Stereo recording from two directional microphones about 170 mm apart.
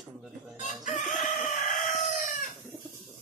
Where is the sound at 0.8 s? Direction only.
45° left (ahead or behind).